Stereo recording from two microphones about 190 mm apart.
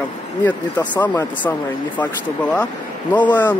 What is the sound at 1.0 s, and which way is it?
Speech, 10° left (ahead or behind).